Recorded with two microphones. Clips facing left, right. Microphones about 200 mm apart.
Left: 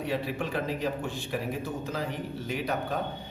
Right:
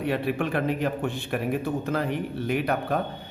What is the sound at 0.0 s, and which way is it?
A man's voice, 60° right (ahead or behind).